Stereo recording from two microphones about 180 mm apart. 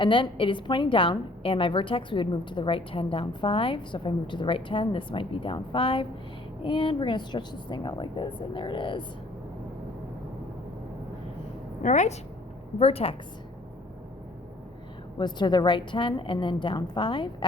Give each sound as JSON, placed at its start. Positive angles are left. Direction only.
{"t": 0.0, "sound": "a woman's voice", "side_deg": 30}
{"t": 11.8, "sound": "a woman's voice", "side_deg": 40}
{"t": 15.2, "sound": "a woman's voice", "side_deg": 25}